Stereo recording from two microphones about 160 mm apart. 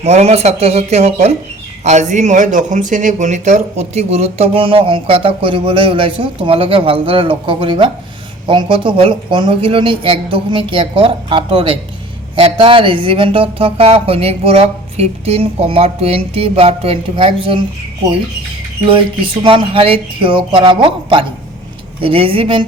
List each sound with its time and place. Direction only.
0.0 s speech: 45° right (ahead or behind)
18.9 s speech: 30° right (ahead or behind)